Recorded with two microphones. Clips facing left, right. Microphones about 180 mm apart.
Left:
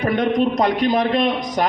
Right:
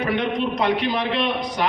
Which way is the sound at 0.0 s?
45° left (ahead or behind).